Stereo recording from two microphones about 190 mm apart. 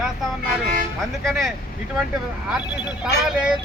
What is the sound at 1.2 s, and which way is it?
Speech, centre (ahead or behind).